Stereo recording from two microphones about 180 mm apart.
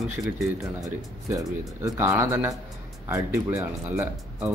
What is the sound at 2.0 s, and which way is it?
Speech, 15° right (ahead or behind).